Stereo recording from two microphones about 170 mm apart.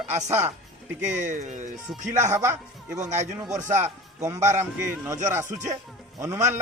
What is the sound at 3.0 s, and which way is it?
Speech, 45° right (ahead or behind).